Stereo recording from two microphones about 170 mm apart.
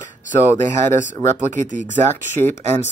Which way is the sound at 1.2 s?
45° right (ahead or behind).